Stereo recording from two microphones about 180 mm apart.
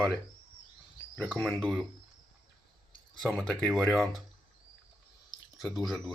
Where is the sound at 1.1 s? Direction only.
5° left (ahead or behind).